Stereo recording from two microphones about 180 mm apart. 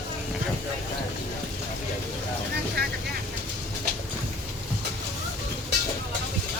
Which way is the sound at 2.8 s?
60° right (ahead or behind).